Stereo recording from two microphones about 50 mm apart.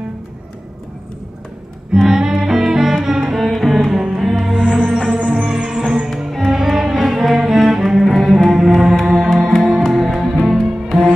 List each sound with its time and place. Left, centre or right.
2.0 s music: centre
4.9 s music: centre
6.0 s cello: centre
9.3 s music: centre